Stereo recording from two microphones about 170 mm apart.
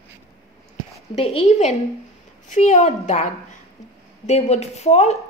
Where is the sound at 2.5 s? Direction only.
45° left (ahead or behind).